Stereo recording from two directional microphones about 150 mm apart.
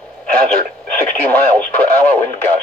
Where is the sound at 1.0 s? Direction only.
10° left (ahead or behind).